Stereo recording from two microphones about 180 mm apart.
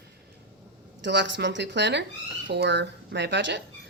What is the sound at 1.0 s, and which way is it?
Speech, 75° right (ahead or behind).